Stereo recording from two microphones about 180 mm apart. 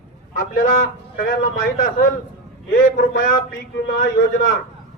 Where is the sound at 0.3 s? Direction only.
50° left (ahead or behind).